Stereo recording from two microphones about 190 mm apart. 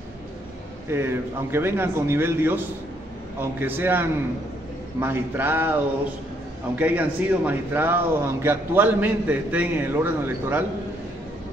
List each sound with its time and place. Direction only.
0.8 s a man's voice: 15° right (ahead or behind)